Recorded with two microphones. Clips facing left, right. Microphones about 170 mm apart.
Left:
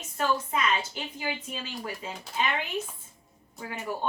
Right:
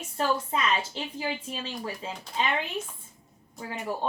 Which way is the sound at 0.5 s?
30° right (ahead or behind).